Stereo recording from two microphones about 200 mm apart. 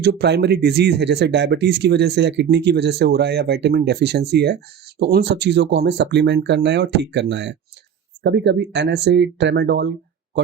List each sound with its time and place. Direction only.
0.0 s speech: 55° right (ahead or behind)